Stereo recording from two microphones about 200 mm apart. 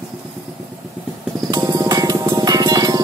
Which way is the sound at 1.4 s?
20° right (ahead or behind).